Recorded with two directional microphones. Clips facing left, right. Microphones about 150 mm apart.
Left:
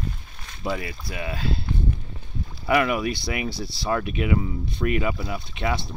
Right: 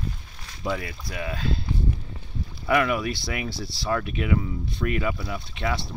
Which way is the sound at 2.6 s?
10° left (ahead or behind).